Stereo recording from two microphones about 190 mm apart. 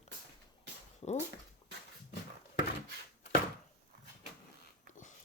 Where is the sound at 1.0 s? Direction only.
30° left (ahead or behind).